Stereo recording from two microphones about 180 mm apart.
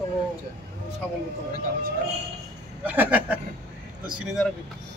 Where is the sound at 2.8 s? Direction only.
10° right (ahead or behind).